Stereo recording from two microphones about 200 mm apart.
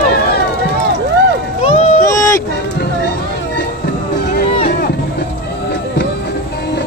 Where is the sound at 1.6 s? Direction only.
35° left (ahead or behind).